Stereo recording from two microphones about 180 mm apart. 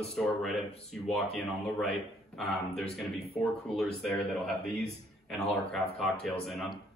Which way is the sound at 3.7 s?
Centre (ahead or behind).